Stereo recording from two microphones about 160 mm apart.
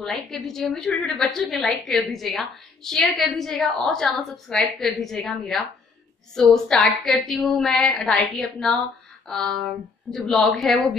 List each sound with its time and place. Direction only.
0.0 s a woman's voice: centre (ahead or behind)